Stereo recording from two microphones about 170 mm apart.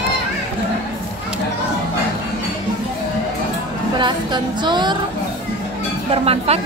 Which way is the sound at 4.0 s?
25° right (ahead or behind).